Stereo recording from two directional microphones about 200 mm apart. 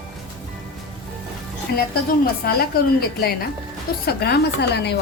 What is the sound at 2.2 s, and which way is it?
A woman's voice, 50° left (ahead or behind).